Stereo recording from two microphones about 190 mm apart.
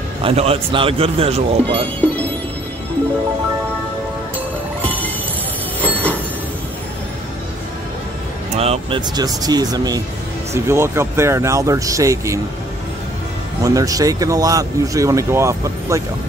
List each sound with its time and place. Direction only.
0.2 s speech: 30° right (ahead or behind)
4.8 s music: 10° left (ahead or behind)
5.8 s train: 10° left (ahead or behind)
8.5 s speech: 35° right (ahead or behind)
9.1 s speech: 20° right (ahead or behind)
13.7 s speech: 20° right (ahead or behind)